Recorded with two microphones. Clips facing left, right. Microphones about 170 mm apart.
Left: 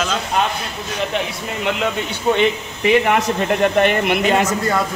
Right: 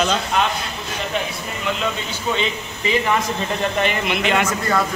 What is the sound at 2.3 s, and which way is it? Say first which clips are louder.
Speech: left 6 dB; 60° left (ahead or behind).